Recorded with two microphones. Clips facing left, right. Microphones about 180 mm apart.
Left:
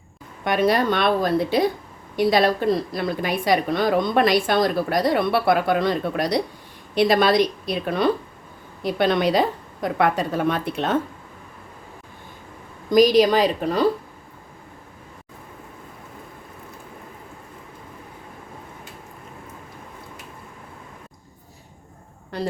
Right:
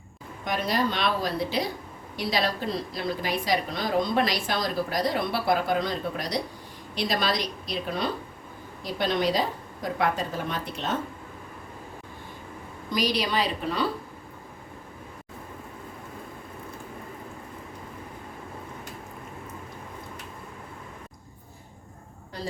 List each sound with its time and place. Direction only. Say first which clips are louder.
0.4 s a woman's voice: left 7 dB; 65° left (ahead or behind)
12.9 s a woman's voice: left 12 dB; 45° left (ahead or behind)
22.3 s a sound: left 9 dB; 65° left (ahead or behind)